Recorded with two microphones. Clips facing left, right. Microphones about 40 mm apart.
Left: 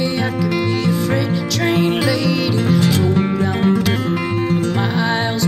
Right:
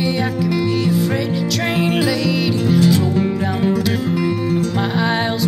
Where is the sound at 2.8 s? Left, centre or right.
Left.